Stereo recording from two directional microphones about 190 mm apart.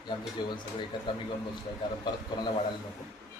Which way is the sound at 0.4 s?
20° left (ahead or behind).